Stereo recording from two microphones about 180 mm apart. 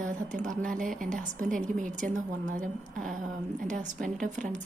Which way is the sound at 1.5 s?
45° right (ahead or behind).